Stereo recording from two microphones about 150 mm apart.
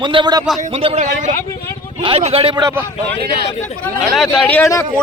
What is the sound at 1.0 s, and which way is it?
Speech, 55° right (ahead or behind).